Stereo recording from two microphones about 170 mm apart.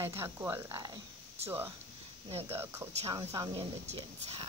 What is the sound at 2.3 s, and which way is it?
Speech, 35° right (ahead or behind).